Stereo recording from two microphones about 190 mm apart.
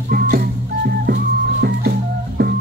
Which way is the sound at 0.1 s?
50° right (ahead or behind).